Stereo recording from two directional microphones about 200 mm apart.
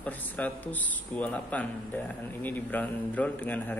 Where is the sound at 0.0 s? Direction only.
10° left (ahead or behind).